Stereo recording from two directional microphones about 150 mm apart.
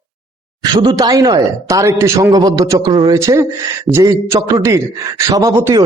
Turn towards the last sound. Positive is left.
turn(degrees=-20)  # may be behind; listen again after turning